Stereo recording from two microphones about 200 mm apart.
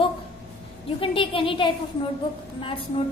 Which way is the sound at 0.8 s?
25° left (ahead or behind).